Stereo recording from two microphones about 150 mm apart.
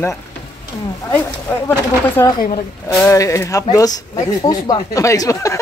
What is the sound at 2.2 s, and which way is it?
A woman's voice, 20° left (ahead or behind).